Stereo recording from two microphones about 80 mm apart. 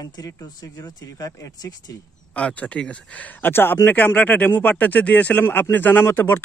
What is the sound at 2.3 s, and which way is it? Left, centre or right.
Speech, centre.